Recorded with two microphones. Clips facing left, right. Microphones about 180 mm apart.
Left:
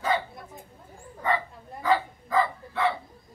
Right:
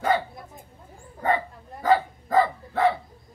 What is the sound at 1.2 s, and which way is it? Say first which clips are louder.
Dog: right 3 dB; 45° right (ahead or behind).